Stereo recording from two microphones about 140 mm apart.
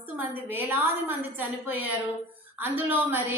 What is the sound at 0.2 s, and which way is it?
A woman's voice, 15° right (ahead or behind).